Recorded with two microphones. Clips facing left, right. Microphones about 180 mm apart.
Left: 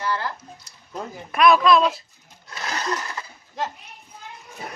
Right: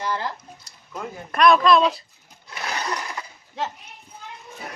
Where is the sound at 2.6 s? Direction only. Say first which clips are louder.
Left 1 dB; 15° right (ahead or behind).